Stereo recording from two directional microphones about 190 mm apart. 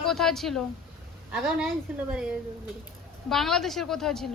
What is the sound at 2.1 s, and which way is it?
A woman's voice, 5° right (ahead or behind).